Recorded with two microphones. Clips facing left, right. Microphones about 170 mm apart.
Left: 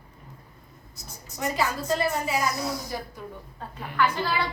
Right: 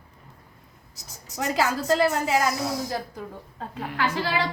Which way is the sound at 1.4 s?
90° right.